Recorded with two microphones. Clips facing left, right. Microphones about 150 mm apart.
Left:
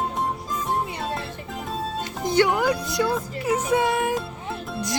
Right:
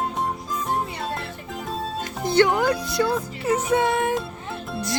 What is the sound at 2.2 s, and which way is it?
Music, 10° left (ahead or behind).